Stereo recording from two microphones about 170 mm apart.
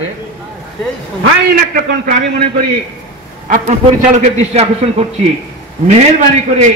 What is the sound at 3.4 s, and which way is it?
A man's voice, 45° right (ahead or behind).